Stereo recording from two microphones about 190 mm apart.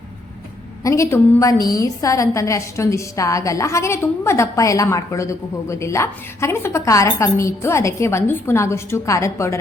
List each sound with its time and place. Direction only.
0.9 s a woman's voice: 15° left (ahead or behind)